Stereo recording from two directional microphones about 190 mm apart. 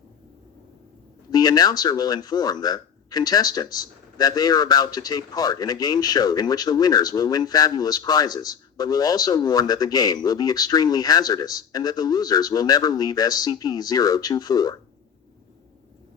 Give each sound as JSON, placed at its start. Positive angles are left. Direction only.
{"t": 1.3, "sound": "speech", "side_deg": 20}